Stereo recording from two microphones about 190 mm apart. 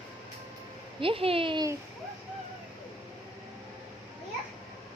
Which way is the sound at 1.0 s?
30° right (ahead or behind).